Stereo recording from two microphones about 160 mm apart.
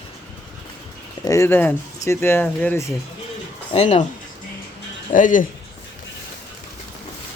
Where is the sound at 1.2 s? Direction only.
20° left (ahead or behind).